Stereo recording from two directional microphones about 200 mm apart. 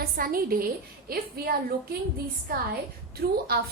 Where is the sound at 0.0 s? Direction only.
45° right (ahead or behind).